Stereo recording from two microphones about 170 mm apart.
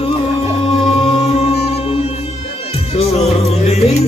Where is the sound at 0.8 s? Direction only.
35° left (ahead or behind).